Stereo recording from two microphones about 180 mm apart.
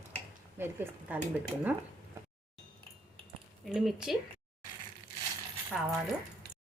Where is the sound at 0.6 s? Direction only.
10° right (ahead or behind).